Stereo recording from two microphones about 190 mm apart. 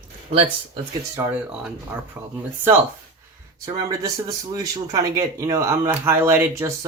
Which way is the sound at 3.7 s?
20° right (ahead or behind).